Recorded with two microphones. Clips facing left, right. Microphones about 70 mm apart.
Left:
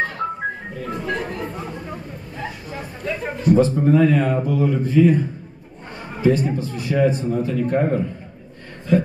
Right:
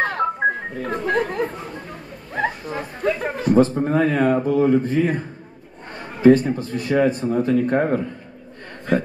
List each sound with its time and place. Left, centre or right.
0.7 s music: right
2.3 s a man's voice: right
6.2 s a man's voice: right